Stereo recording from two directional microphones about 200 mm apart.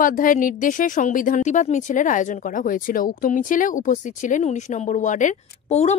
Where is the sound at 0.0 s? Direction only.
45° left (ahead or behind).